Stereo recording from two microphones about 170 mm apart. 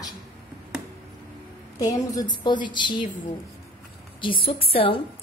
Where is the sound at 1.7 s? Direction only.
20° left (ahead or behind).